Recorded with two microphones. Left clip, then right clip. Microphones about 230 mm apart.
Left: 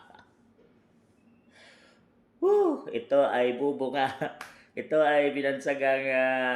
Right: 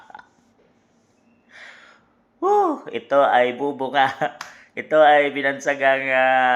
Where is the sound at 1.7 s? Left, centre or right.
Right.